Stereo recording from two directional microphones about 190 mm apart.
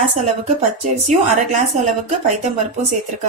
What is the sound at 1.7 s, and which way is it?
Speech, 40° right (ahead or behind).